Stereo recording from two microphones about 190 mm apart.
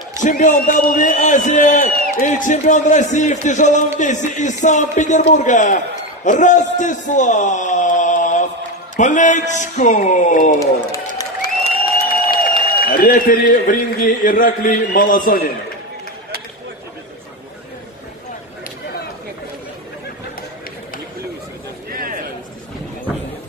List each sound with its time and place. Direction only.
0.2 s a man's voice: 40° left (ahead or behind)
10.6 s run: 15° left (ahead or behind)
12.3 s a man's voice: 50° left (ahead or behind)
21.9 s a sound: 50° right (ahead or behind)